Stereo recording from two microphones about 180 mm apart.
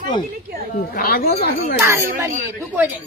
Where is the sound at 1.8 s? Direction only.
15° right (ahead or behind).